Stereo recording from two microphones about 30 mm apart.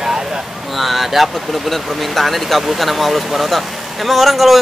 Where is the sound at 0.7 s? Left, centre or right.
Centre.